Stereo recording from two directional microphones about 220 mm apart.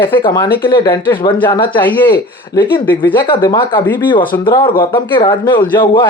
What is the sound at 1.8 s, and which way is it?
Speech, 10° left (ahead or behind).